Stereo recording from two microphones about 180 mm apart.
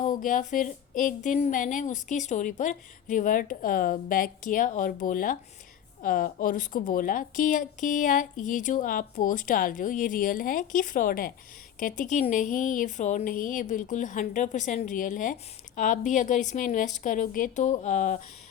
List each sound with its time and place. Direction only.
0.0 s a woman's voice: 45° left (ahead or behind)